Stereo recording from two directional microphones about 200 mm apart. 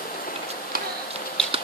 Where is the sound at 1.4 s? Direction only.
5° left (ahead or behind).